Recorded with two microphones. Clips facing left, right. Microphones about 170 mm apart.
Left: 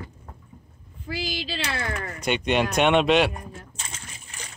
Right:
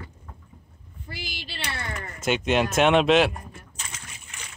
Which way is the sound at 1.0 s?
90° left.